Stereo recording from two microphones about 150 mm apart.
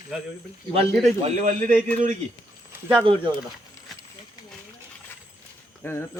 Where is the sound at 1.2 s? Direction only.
50° right (ahead or behind).